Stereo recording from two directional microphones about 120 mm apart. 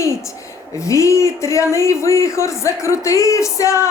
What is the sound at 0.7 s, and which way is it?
Speech, 25° left (ahead or behind).